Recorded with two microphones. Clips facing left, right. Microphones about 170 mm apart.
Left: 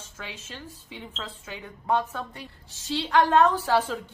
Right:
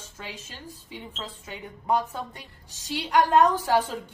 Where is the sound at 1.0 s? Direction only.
15° right (ahead or behind).